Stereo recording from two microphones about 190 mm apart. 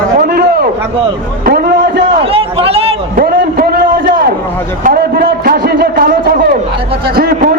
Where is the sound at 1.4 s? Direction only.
55° right (ahead or behind).